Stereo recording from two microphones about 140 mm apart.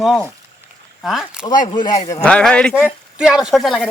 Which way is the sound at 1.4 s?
30° left (ahead or behind).